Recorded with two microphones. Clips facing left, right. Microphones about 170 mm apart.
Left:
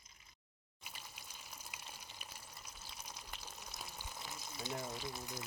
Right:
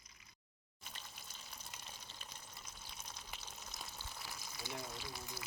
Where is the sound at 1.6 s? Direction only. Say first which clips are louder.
Left 1 dB; 10° left (ahead or behind).